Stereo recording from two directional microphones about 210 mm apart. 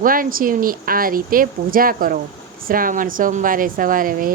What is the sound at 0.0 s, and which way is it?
A woman's voice, 40° right (ahead or behind).